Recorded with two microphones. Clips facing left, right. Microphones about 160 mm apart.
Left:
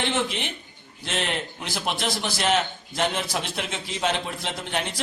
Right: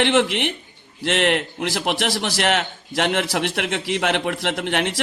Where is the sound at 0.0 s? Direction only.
75° right (ahead or behind).